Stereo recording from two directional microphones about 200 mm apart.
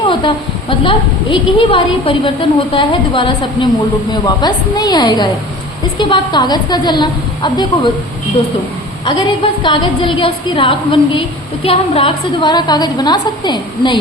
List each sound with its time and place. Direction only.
0.1 s a woman's voice: 25° left (ahead or behind)
9.0 s a woman's voice: 20° left (ahead or behind)